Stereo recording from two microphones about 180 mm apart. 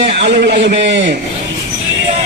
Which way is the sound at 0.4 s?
70° right (ahead or behind).